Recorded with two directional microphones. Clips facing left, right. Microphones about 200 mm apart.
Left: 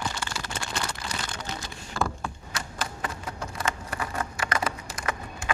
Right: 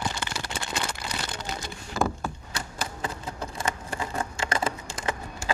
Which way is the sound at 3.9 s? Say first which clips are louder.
Right 1 dB; 25° right (ahead or behind).